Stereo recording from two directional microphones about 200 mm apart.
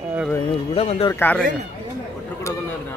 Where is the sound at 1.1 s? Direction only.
10° left (ahead or behind).